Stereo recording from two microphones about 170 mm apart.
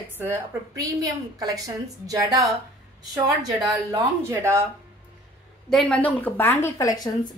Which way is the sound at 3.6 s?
20° right (ahead or behind).